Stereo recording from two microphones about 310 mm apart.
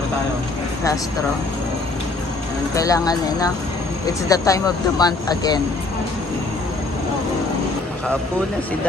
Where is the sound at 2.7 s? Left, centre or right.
Centre.